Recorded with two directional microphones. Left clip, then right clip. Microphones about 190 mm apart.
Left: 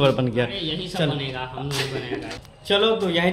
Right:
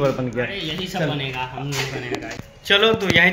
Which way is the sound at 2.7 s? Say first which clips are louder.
Right 3 dB; 5° left (ahead or behind).